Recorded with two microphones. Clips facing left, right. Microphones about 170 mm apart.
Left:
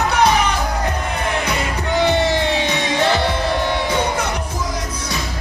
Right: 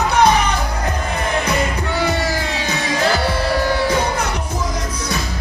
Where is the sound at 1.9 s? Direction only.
25° left (ahead or behind).